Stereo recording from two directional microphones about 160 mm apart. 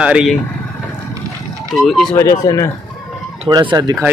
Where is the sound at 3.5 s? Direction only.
25° right (ahead or behind).